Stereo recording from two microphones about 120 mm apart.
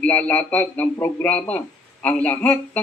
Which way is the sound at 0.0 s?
15° left (ahead or behind).